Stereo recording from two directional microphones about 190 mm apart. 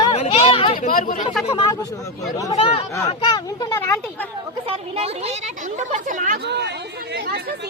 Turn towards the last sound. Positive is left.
turn(degrees=-55)  # may be behind; listen again after turning